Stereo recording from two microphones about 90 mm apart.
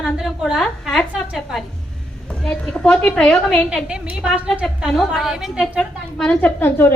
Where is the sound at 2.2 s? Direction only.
10° left (ahead or behind).